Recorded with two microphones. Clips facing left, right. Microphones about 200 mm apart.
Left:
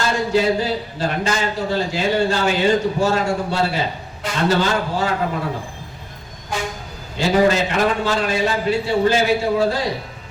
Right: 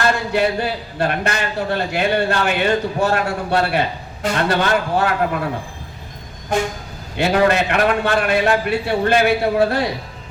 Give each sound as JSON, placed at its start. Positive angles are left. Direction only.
{"t": 0.0, "sound": "speech", "side_deg": -60}
{"t": 7.2, "sound": "speech", "side_deg": -60}